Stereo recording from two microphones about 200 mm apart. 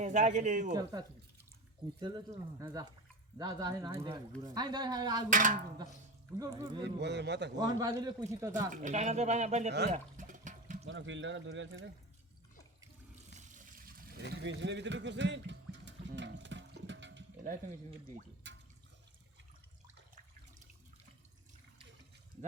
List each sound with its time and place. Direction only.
0.0 s speech: 35° right (ahead or behind)
0.7 s speech: 20° right (ahead or behind)
5.3 s speech: 40° right (ahead or behind)
6.4 s a man's voice: 20° right (ahead or behind)
7.0 s a man's voice: 60° right (ahead or behind)
7.6 s a man's voice: 15° right (ahead or behind)
8.7 s speech: 40° right (ahead or behind)
9.9 s water: 40° right (ahead or behind)
10.8 s speech: 65° right (ahead or behind)
13.3 s water: 40° right (ahead or behind); by 17.2 s 65° right (ahead or behind)
18.5 s drip: 60° right (ahead or behind)